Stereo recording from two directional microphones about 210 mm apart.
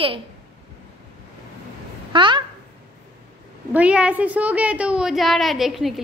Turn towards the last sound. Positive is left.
turn(degrees=0)  # may be behind; listen again after turning